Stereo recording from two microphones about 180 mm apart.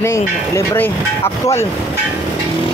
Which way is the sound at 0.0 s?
15° left (ahead or behind).